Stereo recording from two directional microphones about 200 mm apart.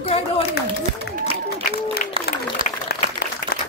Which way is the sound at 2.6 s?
25° right (ahead or behind).